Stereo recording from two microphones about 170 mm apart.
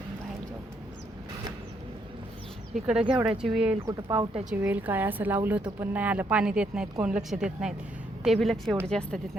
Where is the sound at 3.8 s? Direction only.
20° right (ahead or behind).